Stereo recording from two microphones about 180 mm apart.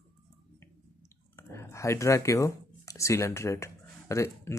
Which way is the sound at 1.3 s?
15° left (ahead or behind).